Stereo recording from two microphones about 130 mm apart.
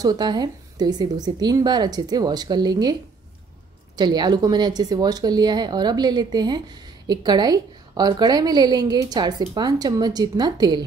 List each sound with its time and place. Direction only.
0.0 s speech: 30° right (ahead or behind)